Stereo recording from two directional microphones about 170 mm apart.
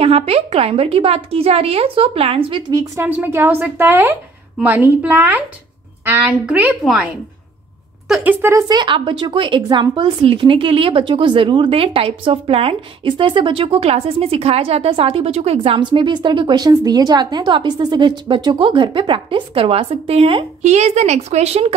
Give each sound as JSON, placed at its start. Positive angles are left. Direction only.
{"t": 0.0, "sound": "speech", "side_deg": -35}
{"t": 2.7, "sound": "a woman's voice", "side_deg": -15}